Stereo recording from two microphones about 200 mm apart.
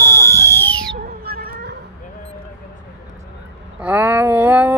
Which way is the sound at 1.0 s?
50° right (ahead or behind).